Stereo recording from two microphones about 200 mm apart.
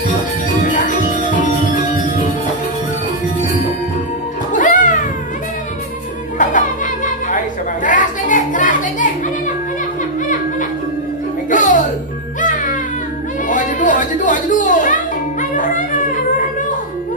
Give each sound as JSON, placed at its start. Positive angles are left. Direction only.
{"t": 0.7, "sound": "music", "side_deg": 40}
{"t": 4.5, "sound": "music", "side_deg": 40}
{"t": 6.3, "sound": "music", "side_deg": 40}
{"t": 7.8, "sound": "a sound", "side_deg": 40}
{"t": 11.5, "sound": "music", "side_deg": 40}
{"t": 13.5, "sound": "chatter", "side_deg": 40}
{"t": 15.5, "sound": "music", "side_deg": 40}